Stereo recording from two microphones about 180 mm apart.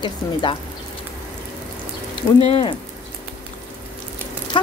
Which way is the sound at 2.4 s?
35° left (ahead or behind).